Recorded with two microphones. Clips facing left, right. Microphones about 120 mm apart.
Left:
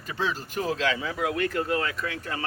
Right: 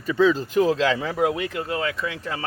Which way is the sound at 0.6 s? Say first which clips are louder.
Right 6 dB; 90° right.